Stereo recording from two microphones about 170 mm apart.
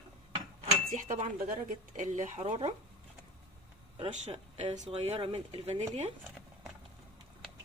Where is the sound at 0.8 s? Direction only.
50° right (ahead or behind).